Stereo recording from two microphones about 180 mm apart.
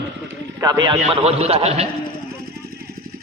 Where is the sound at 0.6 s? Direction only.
20° right (ahead or behind).